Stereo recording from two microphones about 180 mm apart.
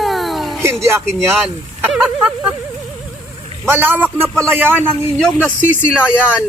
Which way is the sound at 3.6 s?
10° right (ahead or behind).